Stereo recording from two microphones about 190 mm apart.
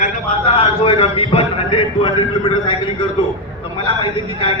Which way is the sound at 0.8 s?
30° left (ahead or behind).